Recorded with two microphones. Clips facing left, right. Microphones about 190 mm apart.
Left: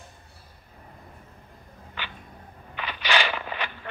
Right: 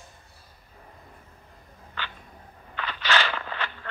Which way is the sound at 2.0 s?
15° left (ahead or behind).